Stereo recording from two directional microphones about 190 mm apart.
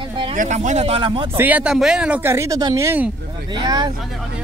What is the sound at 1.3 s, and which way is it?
Speech, 10° right (ahead or behind).